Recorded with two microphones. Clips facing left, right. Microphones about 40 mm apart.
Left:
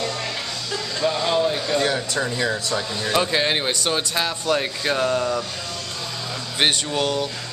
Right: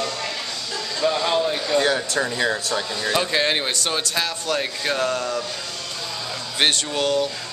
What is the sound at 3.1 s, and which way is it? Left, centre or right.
Speech, centre.